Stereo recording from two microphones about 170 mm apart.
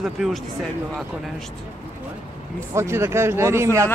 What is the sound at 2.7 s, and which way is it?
Speech, 15° right (ahead or behind).